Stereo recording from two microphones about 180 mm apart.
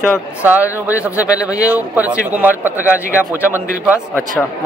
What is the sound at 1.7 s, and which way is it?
Speech, 10° right (ahead or behind).